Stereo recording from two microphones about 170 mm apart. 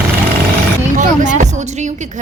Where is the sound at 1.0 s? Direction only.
50° right (ahead or behind).